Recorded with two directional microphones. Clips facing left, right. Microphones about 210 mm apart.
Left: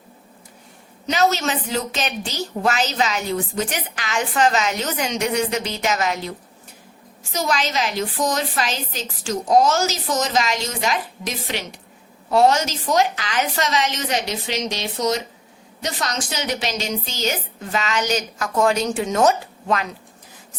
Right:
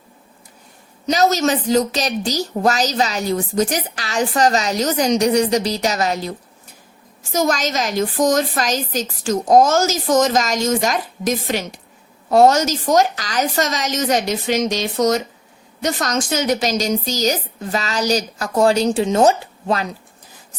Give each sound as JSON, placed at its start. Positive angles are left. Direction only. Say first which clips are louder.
{"t": 1.0, "sound": "a woman's voice", "louder": "right 4 dB", "side_deg": -40}
{"t": 7.3, "sound": "a woman's voice", "louder": "right 4 dB", "side_deg": -45}